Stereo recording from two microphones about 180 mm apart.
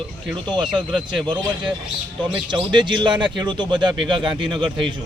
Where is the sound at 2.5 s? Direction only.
25° right (ahead or behind).